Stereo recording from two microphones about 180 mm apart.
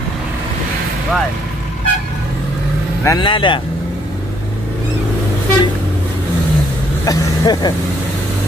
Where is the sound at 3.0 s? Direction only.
20° left (ahead or behind).